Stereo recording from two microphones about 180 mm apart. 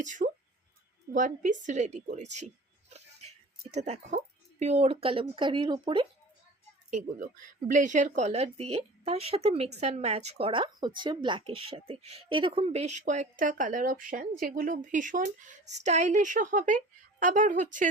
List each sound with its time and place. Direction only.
0.0 s a woman's voice: 45° right (ahead or behind)
3.7 s a woman's voice: 40° right (ahead or behind)
7.7 s a woman's voice: 45° right (ahead or behind)